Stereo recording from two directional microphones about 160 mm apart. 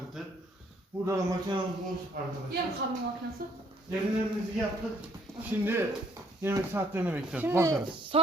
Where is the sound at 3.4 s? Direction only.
65° right (ahead or behind).